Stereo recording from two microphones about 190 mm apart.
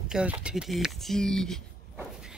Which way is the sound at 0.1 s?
5° right (ahead or behind).